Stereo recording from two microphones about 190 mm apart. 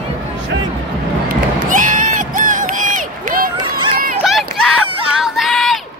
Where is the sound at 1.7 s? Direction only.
40° right (ahead or behind).